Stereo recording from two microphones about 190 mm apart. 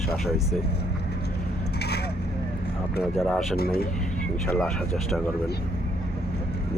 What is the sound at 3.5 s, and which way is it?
Speech, 55° left (ahead or behind).